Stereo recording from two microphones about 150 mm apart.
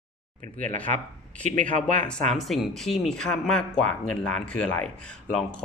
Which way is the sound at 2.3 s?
Centre (ahead or behind).